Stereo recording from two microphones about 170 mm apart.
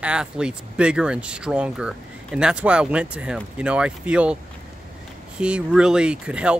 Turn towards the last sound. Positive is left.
turn(degrees=-5)  # may be behind; listen again after turning